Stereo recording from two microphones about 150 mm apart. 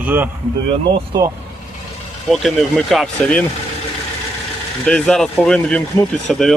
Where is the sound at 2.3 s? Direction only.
Centre (ahead or behind).